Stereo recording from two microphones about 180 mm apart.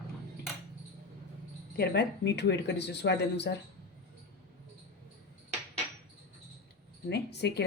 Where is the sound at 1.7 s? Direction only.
65° left (ahead or behind).